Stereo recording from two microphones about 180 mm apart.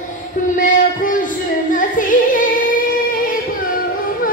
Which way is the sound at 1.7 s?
45° left (ahead or behind).